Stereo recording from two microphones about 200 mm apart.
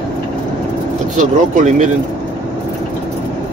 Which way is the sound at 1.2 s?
40° right (ahead or behind).